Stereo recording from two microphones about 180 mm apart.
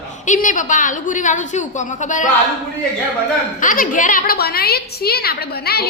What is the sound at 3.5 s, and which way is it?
A woman's voice, 50° left (ahead or behind).